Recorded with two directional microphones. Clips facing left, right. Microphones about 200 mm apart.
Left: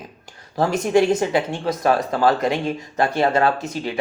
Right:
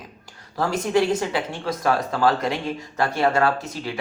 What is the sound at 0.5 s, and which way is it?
Speech, 20° left (ahead or behind).